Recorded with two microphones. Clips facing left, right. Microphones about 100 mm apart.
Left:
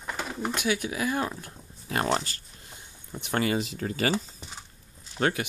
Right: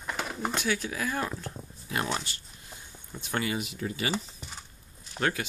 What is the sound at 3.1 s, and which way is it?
Speech, 20° left (ahead or behind).